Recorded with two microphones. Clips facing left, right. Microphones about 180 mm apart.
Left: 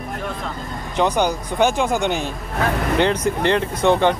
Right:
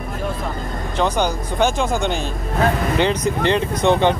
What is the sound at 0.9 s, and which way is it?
Speech, 15° left (ahead or behind).